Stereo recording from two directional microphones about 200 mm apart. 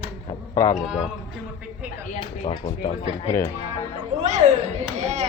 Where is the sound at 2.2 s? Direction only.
25° left (ahead or behind).